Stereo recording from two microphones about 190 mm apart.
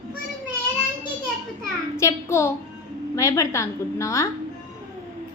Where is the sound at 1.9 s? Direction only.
15° left (ahead or behind).